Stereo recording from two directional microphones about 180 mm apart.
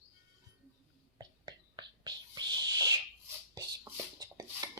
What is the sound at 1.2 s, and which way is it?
Whispering, 25° right (ahead or behind).